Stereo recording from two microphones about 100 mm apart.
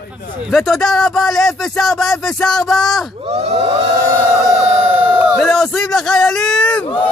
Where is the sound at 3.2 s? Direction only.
90° right.